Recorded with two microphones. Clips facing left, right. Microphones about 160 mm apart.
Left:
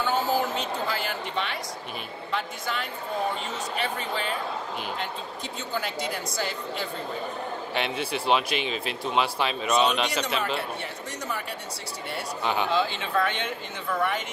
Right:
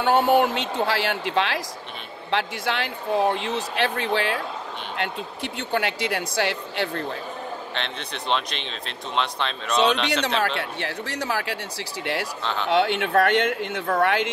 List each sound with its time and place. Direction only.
0.0 s speech: 70° right (ahead or behind); by 4.4 s 85° right
4.9 s speech: 70° right (ahead or behind)
7.7 s speech: 10° left (ahead or behind)
10.6 s speech: 80° right
12.6 s speech: 70° right (ahead or behind)